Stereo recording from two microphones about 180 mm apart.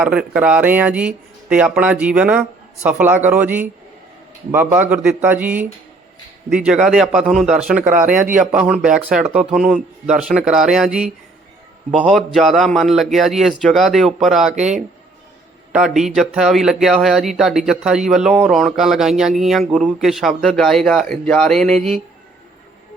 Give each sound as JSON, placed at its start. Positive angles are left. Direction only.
{"t": 0.0, "sound": "speech", "side_deg": -5}
{"t": 8.1, "sound": "a man's voice", "side_deg": -45}
{"t": 8.4, "sound": "speech", "side_deg": -5}
{"t": 14.6, "sound": "speech", "side_deg": -40}
{"t": 15.7, "sound": "speech", "side_deg": -5}